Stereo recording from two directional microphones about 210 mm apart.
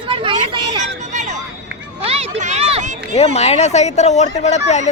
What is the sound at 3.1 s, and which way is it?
Speech, 30° left (ahead or behind).